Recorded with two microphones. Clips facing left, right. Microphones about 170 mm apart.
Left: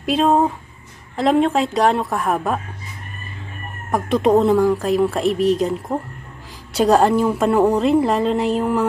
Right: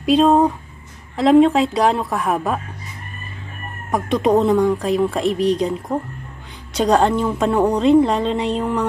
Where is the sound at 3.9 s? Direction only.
Centre (ahead or behind).